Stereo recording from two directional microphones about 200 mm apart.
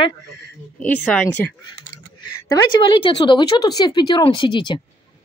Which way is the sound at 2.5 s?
25° left (ahead or behind).